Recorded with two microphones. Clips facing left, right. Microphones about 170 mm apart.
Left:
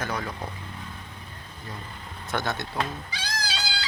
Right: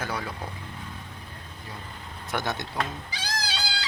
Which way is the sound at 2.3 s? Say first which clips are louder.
Left 1 dB; 15° right (ahead or behind).